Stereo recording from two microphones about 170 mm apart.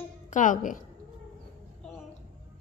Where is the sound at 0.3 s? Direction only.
50° left (ahead or behind).